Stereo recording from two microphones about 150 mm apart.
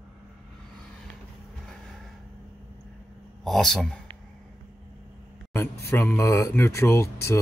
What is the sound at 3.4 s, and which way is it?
Speech, centre (ahead or behind).